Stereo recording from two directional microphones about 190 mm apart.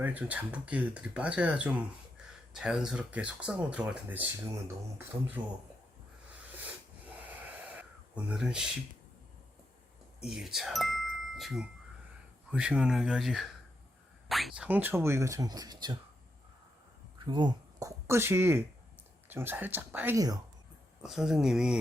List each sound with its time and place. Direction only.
0.0 s speech: 10° right (ahead or behind)
7.2 s a sound: 10° right (ahead or behind)
10.2 s speech: 5° right (ahead or behind); by 16.0 s 20° right (ahead or behind)
17.2 s speech: 25° right (ahead or behind)
21.0 s speech: centre (ahead or behind)